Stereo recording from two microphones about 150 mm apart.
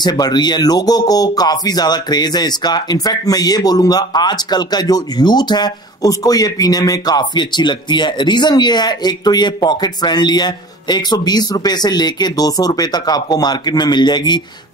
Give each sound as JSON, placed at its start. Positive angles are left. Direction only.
{"t": 0.0, "sound": "speech", "side_deg": 25}